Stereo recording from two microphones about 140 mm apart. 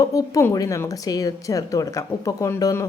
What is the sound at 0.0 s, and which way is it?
A woman's voice, 25° left (ahead or behind).